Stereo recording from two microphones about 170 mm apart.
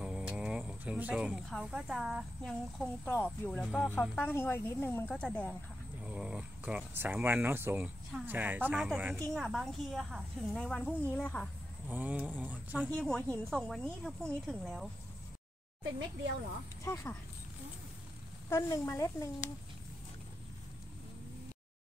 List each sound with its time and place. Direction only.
0.0 s a woman's voice: 5° right (ahead or behind)
6.0 s a woman's voice: 5° right (ahead or behind)
11.9 s speech: 10° right (ahead or behind)
12.9 s a woman's voice: 5° left (ahead or behind)
16.8 s speech: 15° left (ahead or behind)
18.6 s speech: 20° left (ahead or behind)